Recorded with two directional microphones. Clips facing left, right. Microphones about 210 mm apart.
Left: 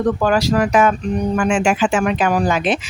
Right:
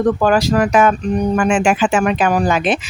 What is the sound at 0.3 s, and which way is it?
Speech, 50° right (ahead or behind).